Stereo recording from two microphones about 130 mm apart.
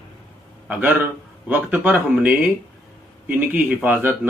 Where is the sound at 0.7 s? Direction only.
10° right (ahead or behind).